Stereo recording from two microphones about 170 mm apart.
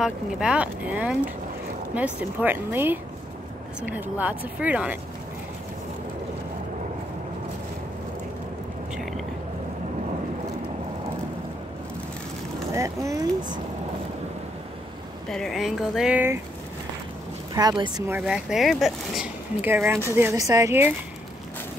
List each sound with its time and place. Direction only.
0.0 s speech: 5° right (ahead or behind)
8.9 s vehicle: centre (ahead or behind)
12.7 s speech: 20° right (ahead or behind)
15.2 s speech: 5° left (ahead or behind)
17.6 s speech: 25° right (ahead or behind)
18.0 s speech: 10° right (ahead or behind)